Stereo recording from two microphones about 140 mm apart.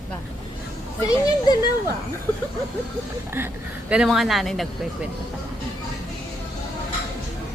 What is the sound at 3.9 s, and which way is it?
Speech, 5° right (ahead or behind).